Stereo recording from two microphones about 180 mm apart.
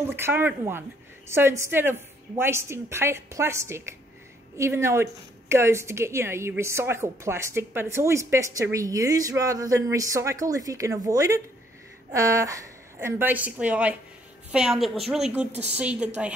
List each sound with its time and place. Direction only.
0.1 s a woman's voice: 10° right (ahead or behind)